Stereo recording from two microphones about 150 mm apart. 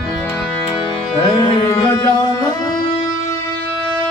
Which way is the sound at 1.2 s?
35° left (ahead or behind).